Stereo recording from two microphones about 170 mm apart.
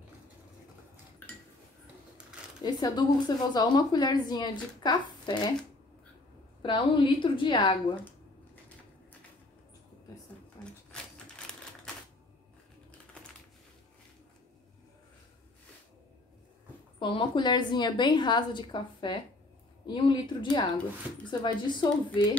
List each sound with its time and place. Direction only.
2.6 s a woman's voice: 25° left (ahead or behind)
6.6 s a woman's voice: 30° left (ahead or behind)
10.6 s typewriter: 5° left (ahead or behind)
17.0 s a woman's voice: 30° left (ahead or behind)